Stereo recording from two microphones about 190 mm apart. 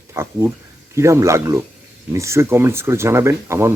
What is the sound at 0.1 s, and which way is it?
Speech, 15° right (ahead or behind).